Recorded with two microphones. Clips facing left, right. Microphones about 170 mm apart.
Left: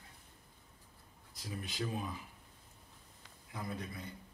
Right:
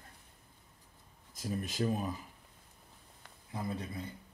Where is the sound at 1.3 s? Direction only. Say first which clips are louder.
Right 7 dB; 45° right (ahead or behind).